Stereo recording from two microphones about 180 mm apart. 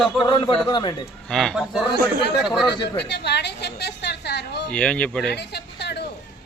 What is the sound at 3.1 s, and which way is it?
A woman's voice, 70° left (ahead or behind).